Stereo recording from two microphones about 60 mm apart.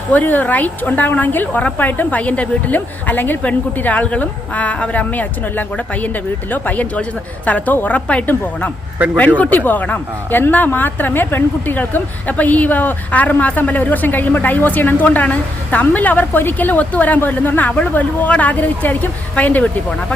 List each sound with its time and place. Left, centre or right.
0.1 s speech: left
9.0 s speech: right
9.4 s speech: left